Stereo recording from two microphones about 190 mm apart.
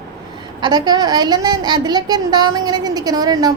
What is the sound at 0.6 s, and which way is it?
A woman's voice, 20° right (ahead or behind).